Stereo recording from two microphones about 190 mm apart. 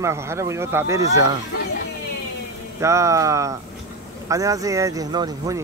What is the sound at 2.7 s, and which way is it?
Speech, 15° right (ahead or behind).